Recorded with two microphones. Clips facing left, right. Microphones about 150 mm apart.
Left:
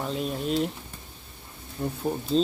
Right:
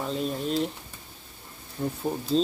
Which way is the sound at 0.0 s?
Centre (ahead or behind).